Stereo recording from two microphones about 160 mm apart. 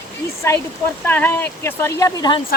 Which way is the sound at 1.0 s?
10° left (ahead or behind).